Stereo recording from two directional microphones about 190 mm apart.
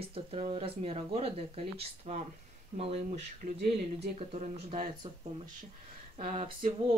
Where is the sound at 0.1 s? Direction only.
30° right (ahead or behind).